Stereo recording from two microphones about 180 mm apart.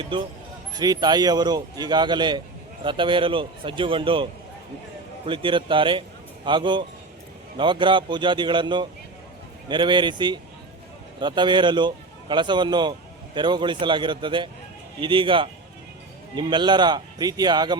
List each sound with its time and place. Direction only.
0.0 s a man's voice: 30° right (ahead or behind)